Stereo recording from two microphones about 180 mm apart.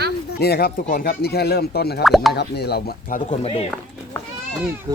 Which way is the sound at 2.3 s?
65° left (ahead or behind).